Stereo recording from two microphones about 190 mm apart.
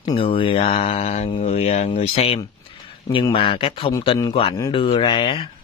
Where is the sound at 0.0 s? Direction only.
30° left (ahead or behind).